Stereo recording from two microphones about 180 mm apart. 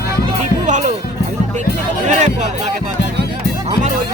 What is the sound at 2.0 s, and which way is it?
Music, 40° right (ahead or behind).